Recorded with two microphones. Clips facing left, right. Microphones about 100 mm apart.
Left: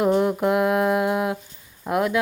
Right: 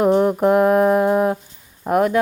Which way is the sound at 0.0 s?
40° right (ahead or behind).